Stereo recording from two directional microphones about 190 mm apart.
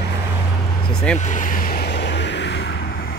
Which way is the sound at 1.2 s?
40° left (ahead or behind).